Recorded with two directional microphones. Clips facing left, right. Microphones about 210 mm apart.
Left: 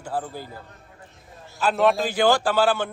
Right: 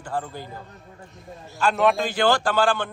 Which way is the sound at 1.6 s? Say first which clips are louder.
Even; 5° left (ahead or behind).